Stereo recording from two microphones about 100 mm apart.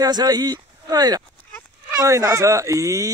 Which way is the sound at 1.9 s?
35° right (ahead or behind).